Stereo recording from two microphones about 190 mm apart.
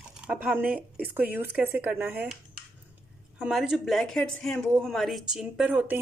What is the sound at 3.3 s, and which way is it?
Speech, 5° right (ahead or behind).